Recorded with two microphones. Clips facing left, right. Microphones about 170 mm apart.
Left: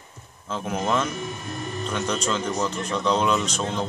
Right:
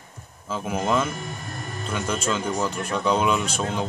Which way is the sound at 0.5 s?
5° right (ahead or behind).